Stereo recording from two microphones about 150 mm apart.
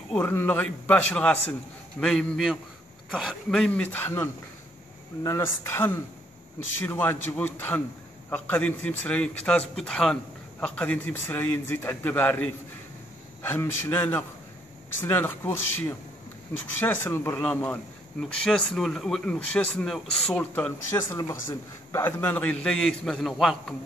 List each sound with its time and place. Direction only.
0.1 s a man's voice: 15° left (ahead or behind)
21.1 s speech: 20° left (ahead or behind); by 23.3 s 5° left (ahead or behind)